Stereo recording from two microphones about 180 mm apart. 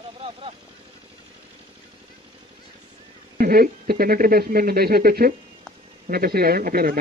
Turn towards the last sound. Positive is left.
turn(degrees=-50)  # may be behind; listen again after turning